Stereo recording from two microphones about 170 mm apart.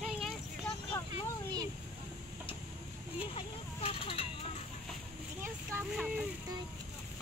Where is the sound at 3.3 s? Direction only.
35° left (ahead or behind).